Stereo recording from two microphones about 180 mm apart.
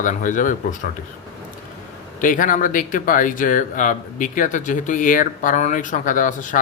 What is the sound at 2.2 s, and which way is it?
Speech, 45° left (ahead or behind).